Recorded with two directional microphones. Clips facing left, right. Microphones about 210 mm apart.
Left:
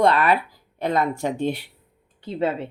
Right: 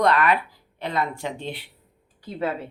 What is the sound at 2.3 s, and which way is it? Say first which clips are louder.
Speech: left 3 dB; 25° left (ahead or behind).